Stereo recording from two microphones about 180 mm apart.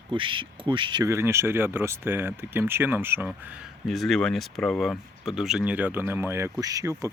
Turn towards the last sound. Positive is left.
turn(degrees=-20)  # may be behind; listen again after turning